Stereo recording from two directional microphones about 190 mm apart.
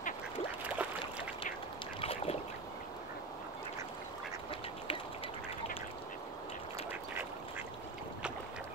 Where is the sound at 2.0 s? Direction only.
30° left (ahead or behind).